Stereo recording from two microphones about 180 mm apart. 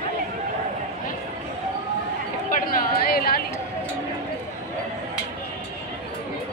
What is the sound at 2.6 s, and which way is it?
Chatter, 55° left (ahead or behind).